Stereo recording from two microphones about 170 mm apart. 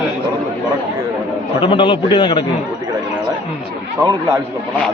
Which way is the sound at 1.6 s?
30° left (ahead or behind).